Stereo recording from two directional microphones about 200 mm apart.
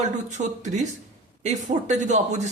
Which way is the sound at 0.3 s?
35° right (ahead or behind).